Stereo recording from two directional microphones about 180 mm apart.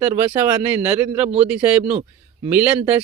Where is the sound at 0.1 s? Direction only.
10° right (ahead or behind).